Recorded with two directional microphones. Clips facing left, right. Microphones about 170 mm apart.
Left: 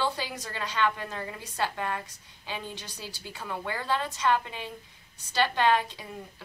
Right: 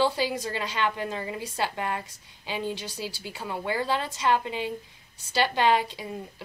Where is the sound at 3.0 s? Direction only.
10° right (ahead or behind).